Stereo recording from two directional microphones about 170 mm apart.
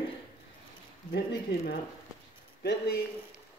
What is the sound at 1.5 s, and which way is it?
Speech, 85° left.